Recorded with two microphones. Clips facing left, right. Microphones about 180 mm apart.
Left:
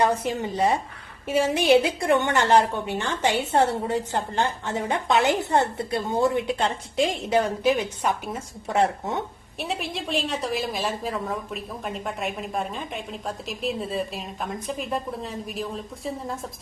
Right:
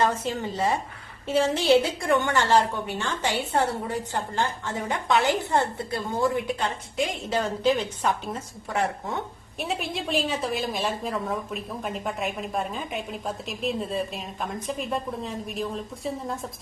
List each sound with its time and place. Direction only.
0.0 s a woman's voice: 15° left (ahead or behind)
8.7 s a woman's voice: 20° left (ahead or behind)
9.6 s a woman's voice: centre (ahead or behind)